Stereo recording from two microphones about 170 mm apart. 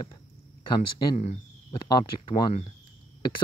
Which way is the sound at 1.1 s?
40° left (ahead or behind).